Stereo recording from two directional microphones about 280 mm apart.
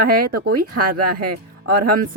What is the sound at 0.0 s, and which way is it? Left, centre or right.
Speech, right.